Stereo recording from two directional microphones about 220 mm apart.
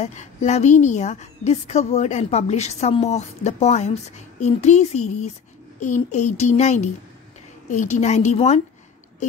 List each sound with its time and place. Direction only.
0.0 s a woman's voice: 30° left (ahead or behind)